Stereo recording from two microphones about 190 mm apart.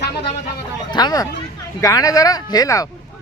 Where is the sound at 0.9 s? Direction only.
20° left (ahead or behind).